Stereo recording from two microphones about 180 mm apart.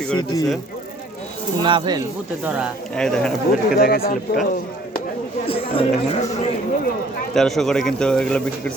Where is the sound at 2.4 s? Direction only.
5° right (ahead or behind).